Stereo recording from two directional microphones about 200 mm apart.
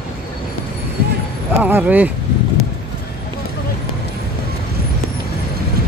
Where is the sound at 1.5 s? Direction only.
10° right (ahead or behind).